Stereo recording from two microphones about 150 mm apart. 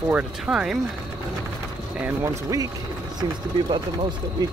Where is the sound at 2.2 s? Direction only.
25° right (ahead or behind).